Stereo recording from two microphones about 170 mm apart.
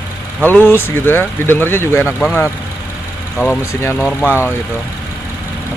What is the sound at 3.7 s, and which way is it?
Speech, 15° left (ahead or behind).